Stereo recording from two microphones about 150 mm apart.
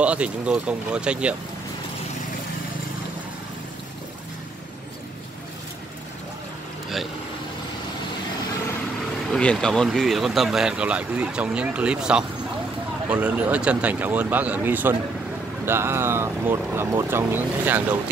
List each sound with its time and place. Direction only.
0.0 s speech: 10° right (ahead or behind)
9.3 s speech: 5° left (ahead or behind); by 17.9 s 10° right (ahead or behind)